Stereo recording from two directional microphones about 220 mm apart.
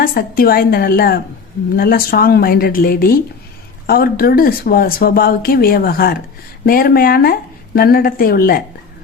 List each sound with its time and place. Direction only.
0.0 s speech: 40° left (ahead or behind)